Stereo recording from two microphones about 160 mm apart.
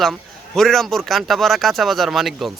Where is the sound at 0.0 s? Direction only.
Centre (ahead or behind).